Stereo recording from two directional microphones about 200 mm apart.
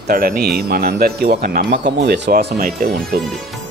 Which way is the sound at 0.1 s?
45° right (ahead or behind).